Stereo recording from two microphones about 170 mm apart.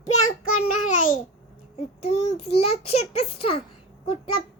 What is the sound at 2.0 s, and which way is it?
A child's voice, 35° left (ahead or behind).